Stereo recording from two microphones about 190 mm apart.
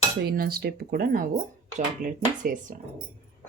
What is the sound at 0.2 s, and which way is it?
Speech, 55° right (ahead or behind).